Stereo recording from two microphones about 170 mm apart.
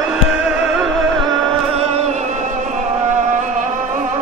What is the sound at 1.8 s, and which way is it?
Music, 40° right (ahead or behind).